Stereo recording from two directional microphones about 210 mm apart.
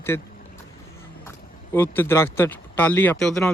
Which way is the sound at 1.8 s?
10° left (ahead or behind).